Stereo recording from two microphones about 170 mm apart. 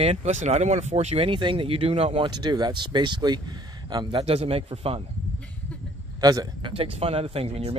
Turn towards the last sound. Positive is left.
turn(degrees=-35)  # may be behind; listen again after turning